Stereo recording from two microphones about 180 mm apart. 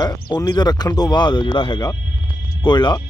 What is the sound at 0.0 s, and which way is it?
Speech, 20° left (ahead or behind).